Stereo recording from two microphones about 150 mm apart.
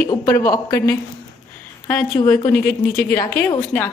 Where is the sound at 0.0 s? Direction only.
20° left (ahead or behind).